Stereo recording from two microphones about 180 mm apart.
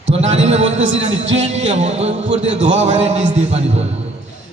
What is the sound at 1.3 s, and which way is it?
A man's voice, 40° right (ahead or behind).